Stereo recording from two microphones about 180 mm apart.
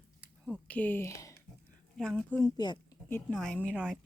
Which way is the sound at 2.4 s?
25° left (ahead or behind).